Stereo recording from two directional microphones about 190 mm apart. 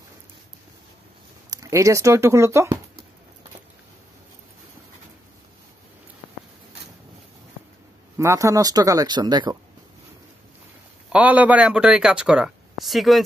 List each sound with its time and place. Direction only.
1.5 s speech: 15° right (ahead or behind)
8.2 s speech: 15° right (ahead or behind)
11.1 s a man's voice: 5° right (ahead or behind)